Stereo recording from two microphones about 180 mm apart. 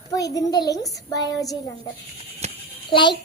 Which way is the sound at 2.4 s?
35° right (ahead or behind).